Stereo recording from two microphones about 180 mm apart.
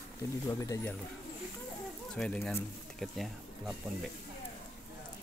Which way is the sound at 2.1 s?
5° left (ahead or behind).